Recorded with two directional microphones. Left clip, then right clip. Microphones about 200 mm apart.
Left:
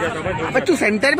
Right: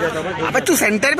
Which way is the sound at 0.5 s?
Centre (ahead or behind).